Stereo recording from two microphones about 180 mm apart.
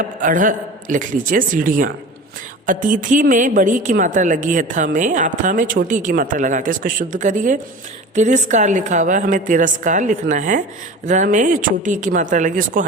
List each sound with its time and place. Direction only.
0.2 s a woman's voice: 50° right (ahead or behind)